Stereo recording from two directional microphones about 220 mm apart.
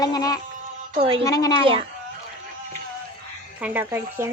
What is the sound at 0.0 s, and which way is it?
A woman's voice, 15° left (ahead or behind).